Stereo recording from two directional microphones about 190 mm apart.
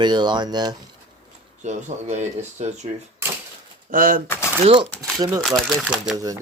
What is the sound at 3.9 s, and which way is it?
Speech, 45° right (ahead or behind).